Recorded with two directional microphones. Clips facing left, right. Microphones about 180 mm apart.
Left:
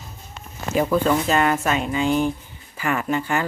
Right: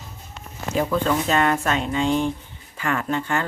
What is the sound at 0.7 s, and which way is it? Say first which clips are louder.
Speech: left 2 dB; 5° left (ahead or behind).